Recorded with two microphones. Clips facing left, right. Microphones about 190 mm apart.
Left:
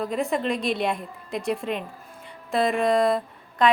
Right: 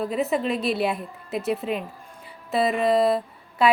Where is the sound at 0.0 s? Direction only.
5° right (ahead or behind).